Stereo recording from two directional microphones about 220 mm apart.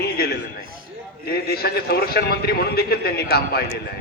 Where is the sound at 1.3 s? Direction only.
45° left (ahead or behind).